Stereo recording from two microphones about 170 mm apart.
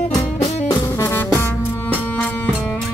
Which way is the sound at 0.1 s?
20° left (ahead or behind).